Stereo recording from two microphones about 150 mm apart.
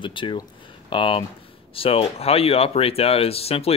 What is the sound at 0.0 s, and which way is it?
Speech, 35° left (ahead or behind).